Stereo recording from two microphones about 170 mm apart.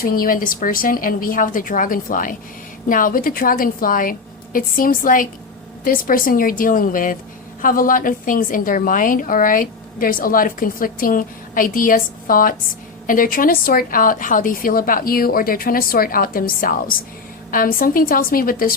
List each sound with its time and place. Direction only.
0.0 s a woman's voice: 60° left (ahead or behind)